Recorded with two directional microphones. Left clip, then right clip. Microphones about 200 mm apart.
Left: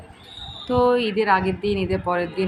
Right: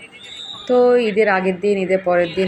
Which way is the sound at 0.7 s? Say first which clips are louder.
Right 5 dB; centre (ahead or behind).